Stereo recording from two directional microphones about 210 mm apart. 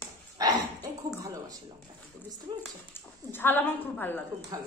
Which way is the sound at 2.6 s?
10° left (ahead or behind).